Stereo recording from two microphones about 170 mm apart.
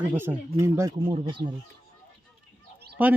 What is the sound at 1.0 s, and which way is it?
Speech, 30° right (ahead or behind).